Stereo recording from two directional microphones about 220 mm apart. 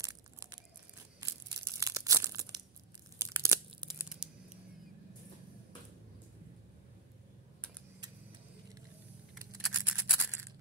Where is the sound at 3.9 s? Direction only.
5° right (ahead or behind).